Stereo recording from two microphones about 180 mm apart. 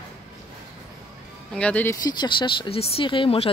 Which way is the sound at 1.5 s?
10° left (ahead or behind).